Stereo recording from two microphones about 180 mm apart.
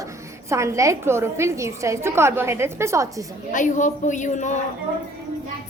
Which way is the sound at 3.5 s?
45° left (ahead or behind).